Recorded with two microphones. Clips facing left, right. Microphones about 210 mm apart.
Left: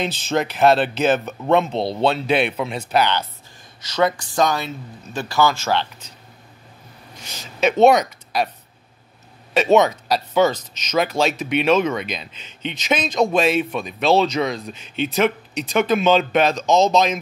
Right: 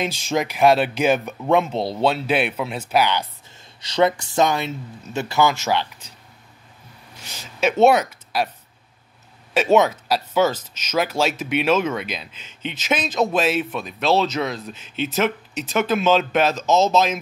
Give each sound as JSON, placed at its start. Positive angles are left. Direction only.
{"t": 0.0, "sound": "speech", "side_deg": -10}
{"t": 3.8, "sound": "speech", "side_deg": -25}
{"t": 7.6, "sound": "speech", "side_deg": -5}
{"t": 9.5, "sound": "speech", "side_deg": -5}